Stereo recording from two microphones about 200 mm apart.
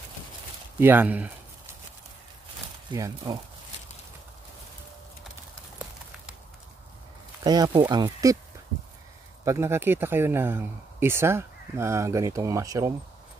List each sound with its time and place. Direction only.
0.7 s speech: 10° right (ahead or behind)
2.9 s speech: 20° right (ahead or behind)
7.4 s speech: 20° right (ahead or behind)
9.4 s speech: 15° right (ahead or behind)